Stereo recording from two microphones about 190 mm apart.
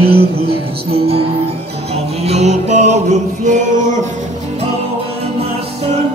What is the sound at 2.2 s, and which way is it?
Music, 35° right (ahead or behind).